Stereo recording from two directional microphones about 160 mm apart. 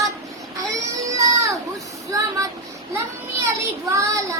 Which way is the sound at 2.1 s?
20° right (ahead or behind).